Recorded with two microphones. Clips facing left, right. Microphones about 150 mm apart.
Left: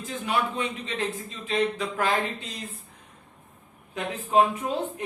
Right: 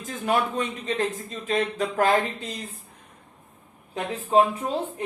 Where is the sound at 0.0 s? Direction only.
45° right (ahead or behind).